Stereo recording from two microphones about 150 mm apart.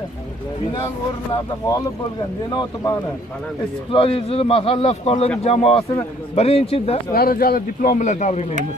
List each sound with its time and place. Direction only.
2.5 s speech: 25° left (ahead or behind)
3.9 s a man's voice: 40° left (ahead or behind)
7.1 s speech: 85° left
8.1 s speech: 50° left (ahead or behind)